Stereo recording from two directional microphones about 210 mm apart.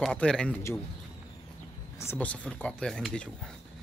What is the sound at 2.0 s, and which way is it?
Speech, 10° left (ahead or behind).